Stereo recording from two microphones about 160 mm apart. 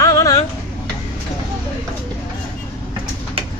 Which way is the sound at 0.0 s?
20° left (ahead or behind).